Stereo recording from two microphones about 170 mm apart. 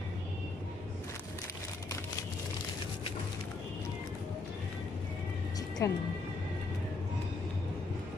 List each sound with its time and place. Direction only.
5.8 s speech: 20° left (ahead or behind)